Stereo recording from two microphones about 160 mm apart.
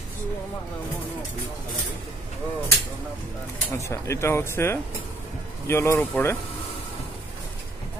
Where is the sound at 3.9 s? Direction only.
15° left (ahead or behind).